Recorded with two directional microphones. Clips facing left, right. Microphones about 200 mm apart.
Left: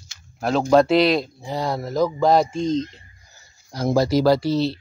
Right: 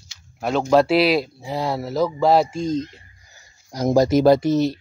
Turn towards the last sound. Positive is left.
turn(degrees=-20)  # may be behind; listen again after turning